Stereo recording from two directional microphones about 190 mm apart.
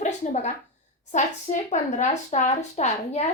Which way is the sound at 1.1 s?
40° left (ahead or behind).